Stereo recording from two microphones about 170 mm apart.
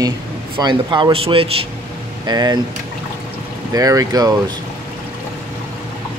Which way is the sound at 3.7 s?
20° right (ahead or behind).